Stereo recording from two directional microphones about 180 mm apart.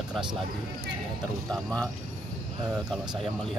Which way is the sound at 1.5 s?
5° left (ahead or behind).